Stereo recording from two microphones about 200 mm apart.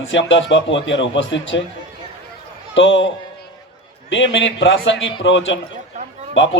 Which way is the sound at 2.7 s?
70° left (ahead or behind).